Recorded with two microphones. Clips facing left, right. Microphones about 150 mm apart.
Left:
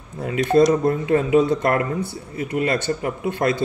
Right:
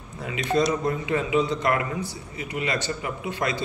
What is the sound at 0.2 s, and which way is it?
Speech, 50° left (ahead or behind).